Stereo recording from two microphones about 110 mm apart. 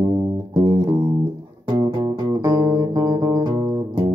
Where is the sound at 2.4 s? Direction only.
35° right (ahead or behind).